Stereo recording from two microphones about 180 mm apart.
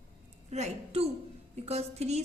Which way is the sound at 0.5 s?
35° right (ahead or behind).